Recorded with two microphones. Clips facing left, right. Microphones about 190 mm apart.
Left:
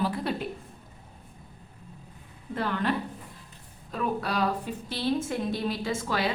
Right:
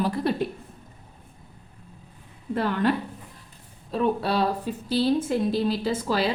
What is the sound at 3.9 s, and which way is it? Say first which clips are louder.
A woman's voice: right 6 dB; 30° right (ahead or behind).